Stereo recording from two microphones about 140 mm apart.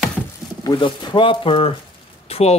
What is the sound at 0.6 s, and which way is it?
Speech, 30° left (ahead or behind).